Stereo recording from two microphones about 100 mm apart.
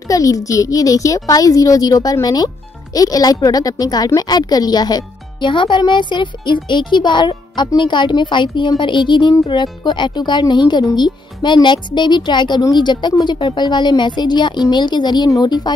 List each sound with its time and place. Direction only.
0.1 s a child's voice: 35° left (ahead or behind)